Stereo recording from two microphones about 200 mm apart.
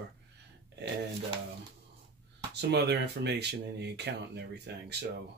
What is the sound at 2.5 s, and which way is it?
Speech, 55° right (ahead or behind).